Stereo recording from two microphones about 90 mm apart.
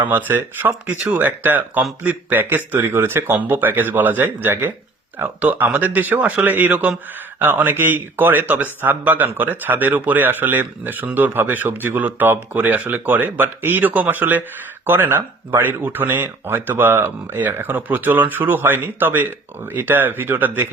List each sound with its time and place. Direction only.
0.0 s a man's voice: 25° right (ahead or behind)